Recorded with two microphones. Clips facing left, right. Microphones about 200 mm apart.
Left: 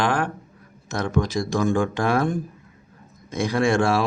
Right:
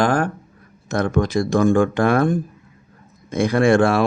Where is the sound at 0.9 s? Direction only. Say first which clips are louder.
Right 4 dB; 55° right (ahead or behind).